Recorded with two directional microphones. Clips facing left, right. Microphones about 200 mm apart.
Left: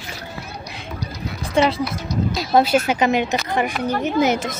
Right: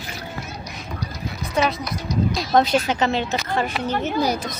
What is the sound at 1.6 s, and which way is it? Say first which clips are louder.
Speech: left 4 dB; 30° left (ahead or behind).